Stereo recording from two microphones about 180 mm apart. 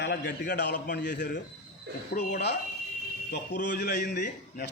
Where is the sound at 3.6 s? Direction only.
70° left (ahead or behind).